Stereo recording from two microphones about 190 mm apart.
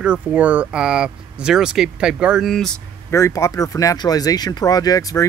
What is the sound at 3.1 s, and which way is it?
Speech, 15° left (ahead or behind).